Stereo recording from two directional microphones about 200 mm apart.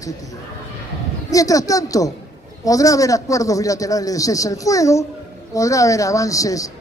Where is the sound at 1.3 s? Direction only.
15° left (ahead or behind).